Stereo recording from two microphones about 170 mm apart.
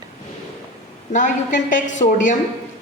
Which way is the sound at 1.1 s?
50° left (ahead or behind).